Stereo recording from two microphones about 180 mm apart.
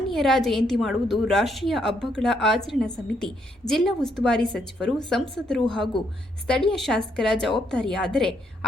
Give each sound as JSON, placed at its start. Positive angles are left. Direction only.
{"t": 0.1, "sound": "a woman's voice", "side_deg": 0}